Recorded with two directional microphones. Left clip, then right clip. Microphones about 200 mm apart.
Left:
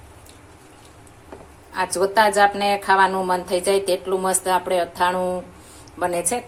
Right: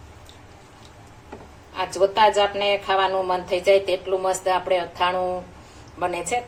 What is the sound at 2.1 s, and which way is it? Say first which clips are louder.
Speech: left 4 dB; 40° left (ahead or behind).